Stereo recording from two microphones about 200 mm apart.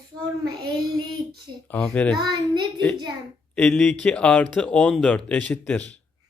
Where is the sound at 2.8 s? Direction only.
5° left (ahead or behind).